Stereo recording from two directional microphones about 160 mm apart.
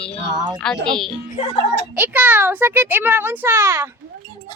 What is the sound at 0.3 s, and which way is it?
Speech, 25° right (ahead or behind).